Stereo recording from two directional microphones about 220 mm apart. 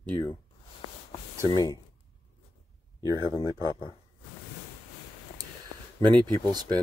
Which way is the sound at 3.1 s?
20° left (ahead or behind).